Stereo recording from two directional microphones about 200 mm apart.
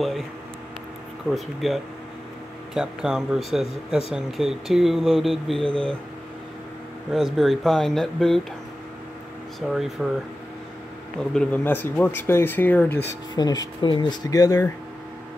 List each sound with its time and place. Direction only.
1.3 s speech: centre (ahead or behind)
7.1 s speech: centre (ahead or behind)
9.6 s speech: centre (ahead or behind)
11.1 s speech: 5° left (ahead or behind)